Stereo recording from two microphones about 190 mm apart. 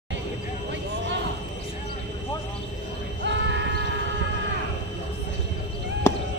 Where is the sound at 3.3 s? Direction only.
70° right (ahead or behind).